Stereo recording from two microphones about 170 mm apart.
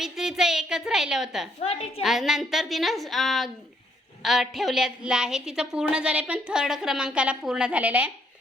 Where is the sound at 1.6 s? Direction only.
35° left (ahead or behind).